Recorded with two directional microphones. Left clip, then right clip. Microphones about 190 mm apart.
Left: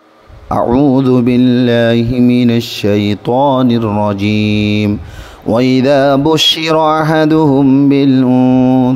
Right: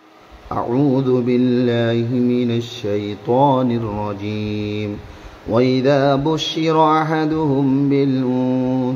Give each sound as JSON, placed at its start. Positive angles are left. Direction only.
{"t": 0.5, "sound": "speech", "side_deg": 50}